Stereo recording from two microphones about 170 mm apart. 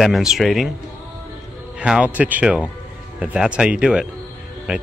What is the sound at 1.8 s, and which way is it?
Speech, 5° right (ahead or behind).